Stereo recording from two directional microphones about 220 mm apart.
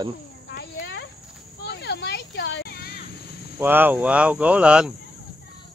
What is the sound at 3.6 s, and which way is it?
Speech, 10° right (ahead or behind).